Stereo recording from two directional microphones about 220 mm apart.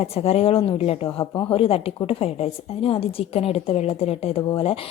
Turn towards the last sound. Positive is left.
turn(degrees=25)  # may be behind; listen again after turning